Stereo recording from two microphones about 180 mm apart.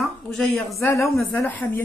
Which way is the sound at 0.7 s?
15° left (ahead or behind).